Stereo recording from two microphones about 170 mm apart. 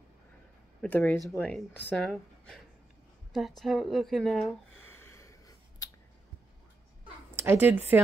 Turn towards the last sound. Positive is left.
turn(degrees=-10)  # may be behind; listen again after turning